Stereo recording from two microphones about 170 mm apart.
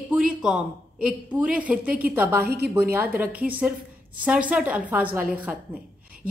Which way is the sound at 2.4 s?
70° right (ahead or behind).